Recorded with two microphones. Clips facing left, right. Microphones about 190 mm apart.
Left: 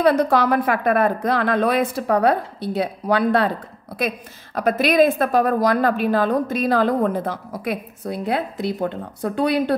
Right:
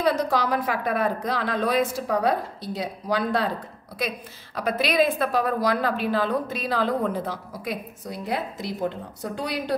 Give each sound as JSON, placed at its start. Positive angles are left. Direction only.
{"t": 0.0, "sound": "a woman's voice", "side_deg": 60}
{"t": 4.6, "sound": "a woman's voice", "side_deg": 50}